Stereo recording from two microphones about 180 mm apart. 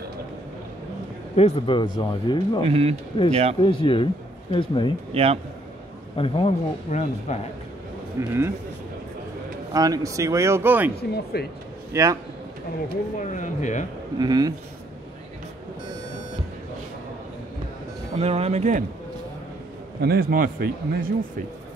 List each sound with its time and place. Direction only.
1.3 s speech: 35° left (ahead or behind)
2.6 s speech: 35° right (ahead or behind)
3.6 s speech: 30° left (ahead or behind)
5.1 s speech: 35° right (ahead or behind)
6.1 s speech: 30° left (ahead or behind)
8.3 s speech: 15° right (ahead or behind)
9.7 s speech: 20° right (ahead or behind)
11.3 s a man's voice: 60° left (ahead or behind)
11.9 s speech: 15° right (ahead or behind)
13.2 s speech: 45° left (ahead or behind)
14.1 s speech: 20° right (ahead or behind)
18.2 s speech: 35° right (ahead or behind)
20.0 s a man's voice: 60° right (ahead or behind)